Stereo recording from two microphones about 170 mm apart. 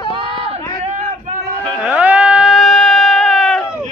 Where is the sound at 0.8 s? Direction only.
45° right (ahead or behind).